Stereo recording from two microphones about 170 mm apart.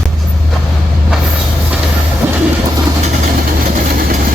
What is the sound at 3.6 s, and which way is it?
Vehicle, 60° right (ahead or behind).